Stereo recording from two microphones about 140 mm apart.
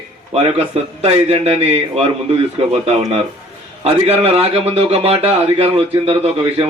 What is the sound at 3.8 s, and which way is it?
A man's voice, 45° right (ahead or behind).